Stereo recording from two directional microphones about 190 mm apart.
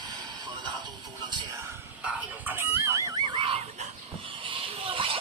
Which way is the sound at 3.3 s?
30° right (ahead or behind).